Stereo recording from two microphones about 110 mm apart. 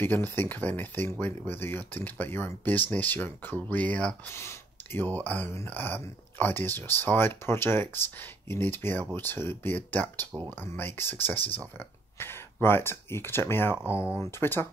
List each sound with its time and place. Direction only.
0.0 s speech: 20° left (ahead or behind)